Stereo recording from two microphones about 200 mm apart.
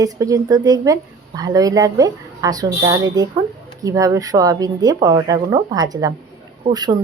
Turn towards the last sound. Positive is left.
turn(degrees=-20)  # may be behind; listen again after turning